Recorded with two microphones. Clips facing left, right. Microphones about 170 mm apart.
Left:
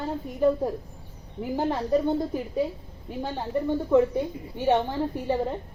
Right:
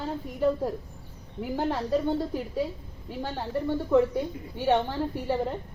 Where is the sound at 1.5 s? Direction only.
15° left (ahead or behind).